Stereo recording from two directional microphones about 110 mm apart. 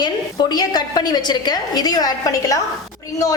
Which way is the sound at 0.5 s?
35° left (ahead or behind).